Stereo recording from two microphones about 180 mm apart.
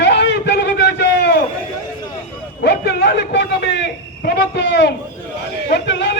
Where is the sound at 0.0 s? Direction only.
75° left (ahead or behind).